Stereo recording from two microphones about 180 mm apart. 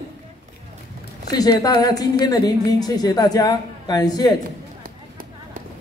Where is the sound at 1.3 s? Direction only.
20° left (ahead or behind).